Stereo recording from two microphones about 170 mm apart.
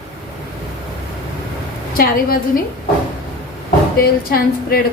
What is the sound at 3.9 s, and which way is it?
Speech, 65° left (ahead or behind).